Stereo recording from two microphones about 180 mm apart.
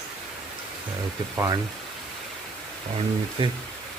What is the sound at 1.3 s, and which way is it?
Speech, 20° right (ahead or behind).